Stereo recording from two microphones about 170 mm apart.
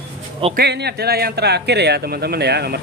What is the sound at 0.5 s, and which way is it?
Speech, 75° right (ahead or behind).